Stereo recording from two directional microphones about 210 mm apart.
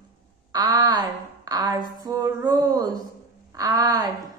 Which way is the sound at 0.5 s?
20° right (ahead or behind).